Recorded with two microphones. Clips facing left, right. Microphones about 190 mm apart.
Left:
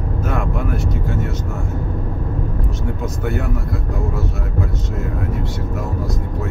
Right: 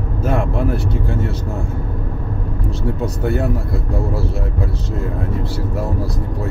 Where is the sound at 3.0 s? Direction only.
30° right (ahead or behind).